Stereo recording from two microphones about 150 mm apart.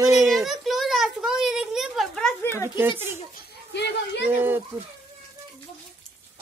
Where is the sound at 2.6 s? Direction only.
15° right (ahead or behind).